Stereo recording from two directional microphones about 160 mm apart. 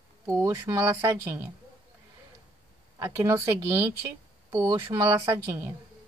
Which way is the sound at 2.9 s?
20° right (ahead or behind).